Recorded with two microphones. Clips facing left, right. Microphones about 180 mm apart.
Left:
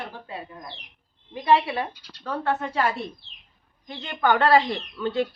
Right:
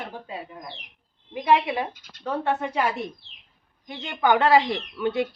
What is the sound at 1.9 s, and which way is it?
Speech, 50° right (ahead or behind).